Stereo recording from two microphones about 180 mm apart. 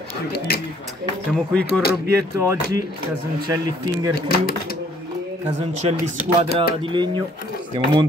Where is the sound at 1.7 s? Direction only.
60° left (ahead or behind).